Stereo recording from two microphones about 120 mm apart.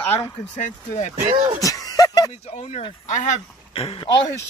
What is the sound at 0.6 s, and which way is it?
Speech, 80° left.